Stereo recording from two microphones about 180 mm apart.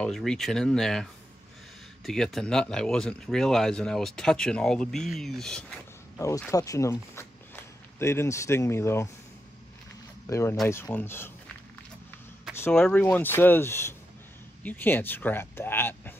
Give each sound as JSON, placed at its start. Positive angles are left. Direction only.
{"t": 0.0, "sound": "speech", "side_deg": 5}
{"t": 2.0, "sound": "speech", "side_deg": 0}
{"t": 6.1, "sound": "speech", "side_deg": 15}
{"t": 10.2, "sound": "speech", "side_deg": 15}
{"t": 12.5, "sound": "speech", "side_deg": 10}